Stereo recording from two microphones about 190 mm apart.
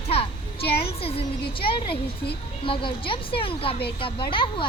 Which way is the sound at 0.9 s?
30° left (ahead or behind).